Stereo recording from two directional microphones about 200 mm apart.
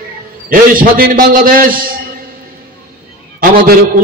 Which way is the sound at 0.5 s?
45° right (ahead or behind).